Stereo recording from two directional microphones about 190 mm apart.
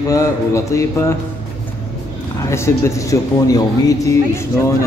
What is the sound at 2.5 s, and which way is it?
Speech, 15° left (ahead or behind).